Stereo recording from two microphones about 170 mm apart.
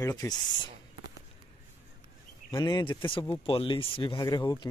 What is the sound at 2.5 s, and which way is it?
Speech, 25° left (ahead or behind).